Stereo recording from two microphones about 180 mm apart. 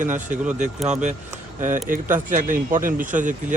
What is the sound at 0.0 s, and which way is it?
A man's voice, 45° right (ahead or behind).